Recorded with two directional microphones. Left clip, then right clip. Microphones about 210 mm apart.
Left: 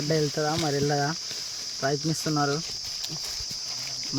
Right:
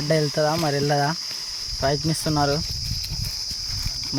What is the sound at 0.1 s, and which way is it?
Speech, 15° right (ahead or behind).